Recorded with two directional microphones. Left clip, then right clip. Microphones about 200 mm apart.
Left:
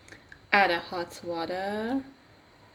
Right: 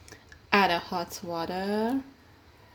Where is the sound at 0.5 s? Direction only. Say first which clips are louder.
Even; 40° right (ahead or behind).